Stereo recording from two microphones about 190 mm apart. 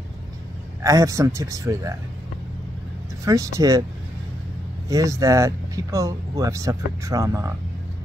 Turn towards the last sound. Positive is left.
turn(degrees=-15)  # may be behind; listen again after turning